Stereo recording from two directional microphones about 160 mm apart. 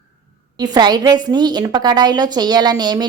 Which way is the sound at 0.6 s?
25° right (ahead or behind).